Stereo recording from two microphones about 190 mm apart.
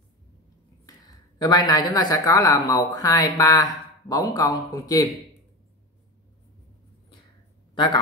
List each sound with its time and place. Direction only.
1.4 s speech: 20° left (ahead or behind)
7.7 s speech: 25° left (ahead or behind)